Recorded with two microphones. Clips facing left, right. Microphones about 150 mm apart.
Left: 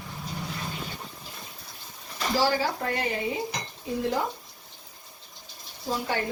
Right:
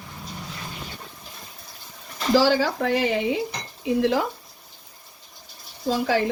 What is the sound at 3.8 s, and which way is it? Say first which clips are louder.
Speech: right 7 dB; 80° right.